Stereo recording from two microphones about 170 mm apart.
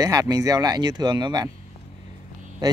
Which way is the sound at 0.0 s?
20° right (ahead or behind).